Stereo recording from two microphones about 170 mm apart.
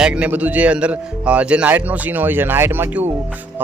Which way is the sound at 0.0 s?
5° right (ahead or behind).